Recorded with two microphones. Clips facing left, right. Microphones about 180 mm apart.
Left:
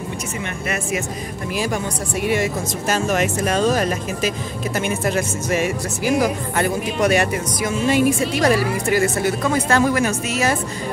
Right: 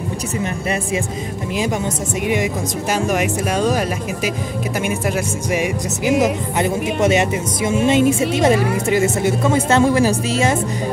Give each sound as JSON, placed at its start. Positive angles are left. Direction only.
{"t": 2.2, "sound": "speech", "side_deg": -15}